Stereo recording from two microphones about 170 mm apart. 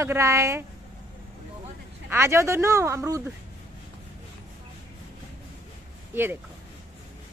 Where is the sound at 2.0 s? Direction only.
15° right (ahead or behind).